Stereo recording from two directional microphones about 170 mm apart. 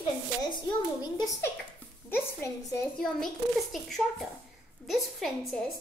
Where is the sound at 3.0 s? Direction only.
Centre (ahead or behind).